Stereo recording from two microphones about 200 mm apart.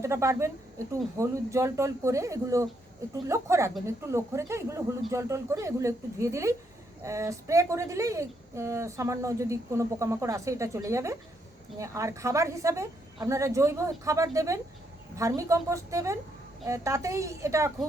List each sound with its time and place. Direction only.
0.0 s speech: 15° right (ahead or behind)